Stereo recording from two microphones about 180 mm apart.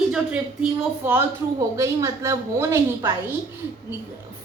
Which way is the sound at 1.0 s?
15° right (ahead or behind).